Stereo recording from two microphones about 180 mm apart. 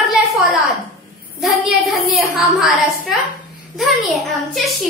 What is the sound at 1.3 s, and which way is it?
Speech, centre (ahead or behind).